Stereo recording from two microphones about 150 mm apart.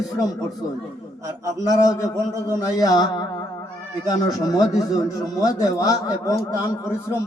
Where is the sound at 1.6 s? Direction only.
25° left (ahead or behind).